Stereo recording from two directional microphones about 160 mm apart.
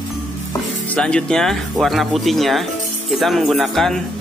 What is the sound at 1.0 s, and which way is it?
Speech, 5° left (ahead or behind).